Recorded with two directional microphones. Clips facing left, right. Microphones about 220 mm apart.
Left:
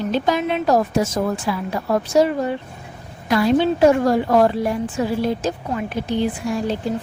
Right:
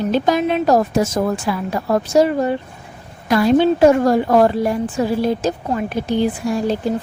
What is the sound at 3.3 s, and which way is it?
A woman's voice, 45° right (ahead or behind).